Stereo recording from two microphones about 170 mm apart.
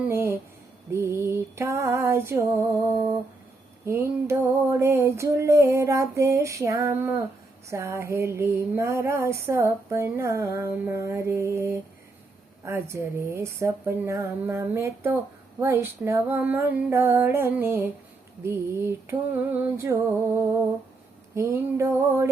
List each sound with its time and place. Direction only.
0.0 s speech: 15° right (ahead or behind)
3.8 s speech: 15° right (ahead or behind)